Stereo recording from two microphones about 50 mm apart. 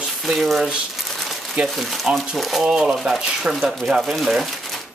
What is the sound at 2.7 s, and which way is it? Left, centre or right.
Speech, centre.